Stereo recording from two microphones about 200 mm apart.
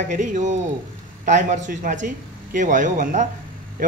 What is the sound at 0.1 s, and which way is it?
Speech, 40° right (ahead or behind).